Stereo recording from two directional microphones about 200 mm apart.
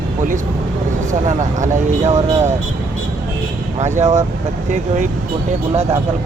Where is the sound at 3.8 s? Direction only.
35° right (ahead or behind).